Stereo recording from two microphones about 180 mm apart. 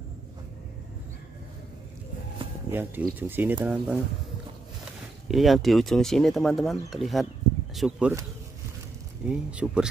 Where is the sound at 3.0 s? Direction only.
10° right (ahead or behind).